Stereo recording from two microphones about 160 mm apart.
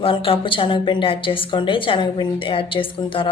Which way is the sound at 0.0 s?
35° left (ahead or behind).